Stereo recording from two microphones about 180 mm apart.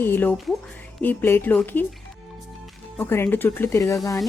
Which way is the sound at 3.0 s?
10° left (ahead or behind).